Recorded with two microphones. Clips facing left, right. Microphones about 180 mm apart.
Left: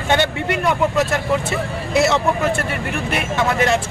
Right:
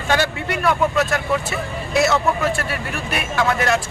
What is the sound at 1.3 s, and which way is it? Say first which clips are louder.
Speech: left 2 dB; 25° left (ahead or behind).